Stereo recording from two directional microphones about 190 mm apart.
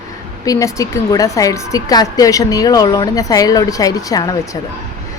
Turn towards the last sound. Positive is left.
turn(degrees=20)  # may be behind; listen again after turning